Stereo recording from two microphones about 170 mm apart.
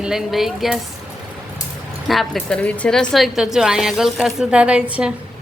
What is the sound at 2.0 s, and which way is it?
A woman's voice, centre (ahead or behind).